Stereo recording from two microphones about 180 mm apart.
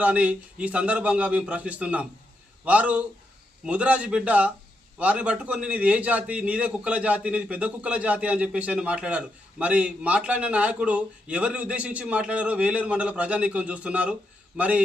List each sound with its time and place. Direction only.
0.0 s a man's voice: 5° right (ahead or behind)